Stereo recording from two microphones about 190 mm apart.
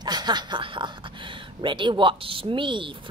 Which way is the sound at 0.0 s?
20° right (ahead or behind).